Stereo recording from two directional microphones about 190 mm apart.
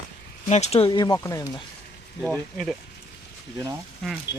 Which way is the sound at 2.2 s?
Centre (ahead or behind).